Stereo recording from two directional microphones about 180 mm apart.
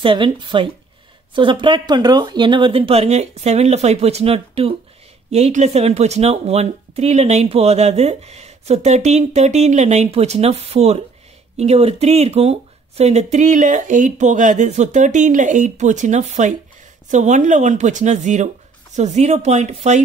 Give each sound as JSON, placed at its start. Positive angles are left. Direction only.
{"t": 0.0, "sound": "speech", "side_deg": -30}